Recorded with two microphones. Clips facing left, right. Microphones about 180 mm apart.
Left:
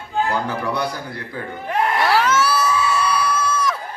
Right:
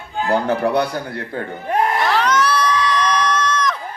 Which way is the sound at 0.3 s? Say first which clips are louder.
Right 5 dB; 60° right (ahead or behind).